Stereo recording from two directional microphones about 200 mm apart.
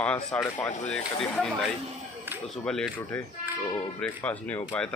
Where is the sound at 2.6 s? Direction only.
5° left (ahead or behind).